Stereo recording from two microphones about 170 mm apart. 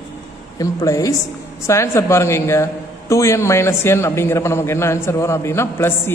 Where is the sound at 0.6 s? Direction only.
20° left (ahead or behind).